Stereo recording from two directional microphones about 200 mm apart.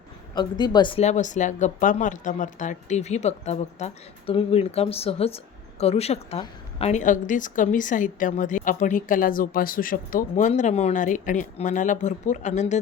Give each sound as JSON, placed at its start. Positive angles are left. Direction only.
{"t": 0.3, "sound": "a woman's voice", "side_deg": 20}